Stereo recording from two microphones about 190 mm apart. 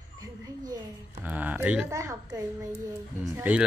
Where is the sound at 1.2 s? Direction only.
10° right (ahead or behind).